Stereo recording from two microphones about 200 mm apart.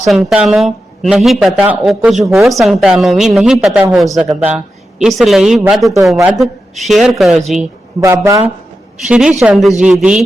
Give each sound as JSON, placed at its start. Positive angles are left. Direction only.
{"t": 0.1, "sound": "speech", "side_deg": 0}
{"t": 8.0, "sound": "speech", "side_deg": -15}
{"t": 9.0, "sound": "speech", "side_deg": -5}